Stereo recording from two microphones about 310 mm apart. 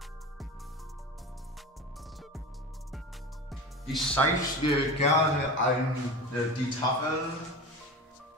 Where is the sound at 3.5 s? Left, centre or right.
Centre.